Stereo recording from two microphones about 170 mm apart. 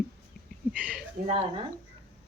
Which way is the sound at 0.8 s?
10° right (ahead or behind).